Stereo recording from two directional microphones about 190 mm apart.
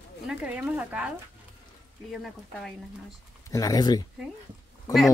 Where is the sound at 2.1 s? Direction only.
Centre (ahead or behind).